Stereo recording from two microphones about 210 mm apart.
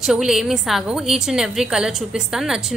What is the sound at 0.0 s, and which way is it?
A woman's voice, centre (ahead or behind).